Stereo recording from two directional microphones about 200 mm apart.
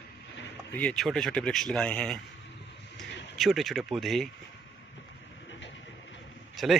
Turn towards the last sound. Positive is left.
turn(degrees=0)  # may be behind; listen again after turning